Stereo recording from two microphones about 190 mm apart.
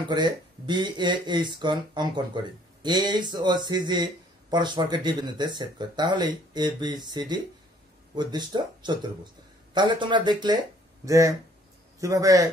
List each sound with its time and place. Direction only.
0.1 s a man's voice: 25° right (ahead or behind)